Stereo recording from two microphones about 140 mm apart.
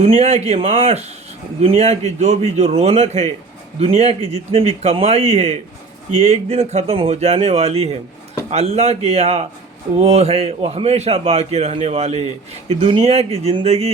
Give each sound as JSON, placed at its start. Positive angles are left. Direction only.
{"t": 0.0, "sound": "a man's voice", "side_deg": -45}